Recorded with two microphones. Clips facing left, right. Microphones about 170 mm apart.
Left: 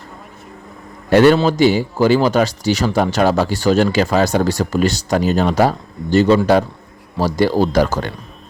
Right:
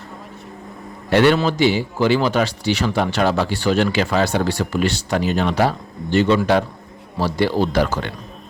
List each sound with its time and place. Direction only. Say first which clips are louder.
1.1 s a man's voice: left 4 dB; 45° left (ahead or behind)